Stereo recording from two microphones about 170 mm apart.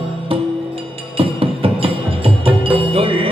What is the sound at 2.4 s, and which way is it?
Music, 30° right (ahead or behind).